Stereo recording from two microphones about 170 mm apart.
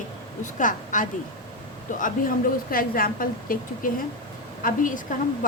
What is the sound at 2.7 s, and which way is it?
Speech, 60° left (ahead or behind).